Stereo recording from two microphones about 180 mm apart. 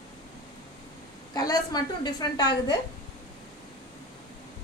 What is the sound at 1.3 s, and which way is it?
A woman's voice, 20° left (ahead or behind).